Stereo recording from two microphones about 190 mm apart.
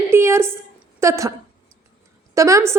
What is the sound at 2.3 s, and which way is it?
Speech, 15° right (ahead or behind).